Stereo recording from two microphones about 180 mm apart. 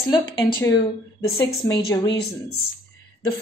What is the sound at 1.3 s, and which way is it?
Speech, 20° left (ahead or behind).